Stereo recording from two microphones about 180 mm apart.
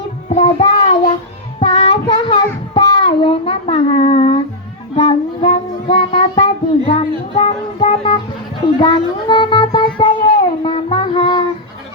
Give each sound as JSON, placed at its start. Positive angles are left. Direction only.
{"t": 0.3, "sound": "child singing", "side_deg": 30}
{"t": 8.8, "sound": "music", "side_deg": 25}